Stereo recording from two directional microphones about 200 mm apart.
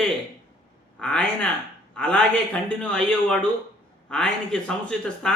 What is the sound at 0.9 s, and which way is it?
A man's voice, 5° left (ahead or behind).